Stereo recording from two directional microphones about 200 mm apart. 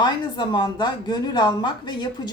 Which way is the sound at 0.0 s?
20° left (ahead or behind).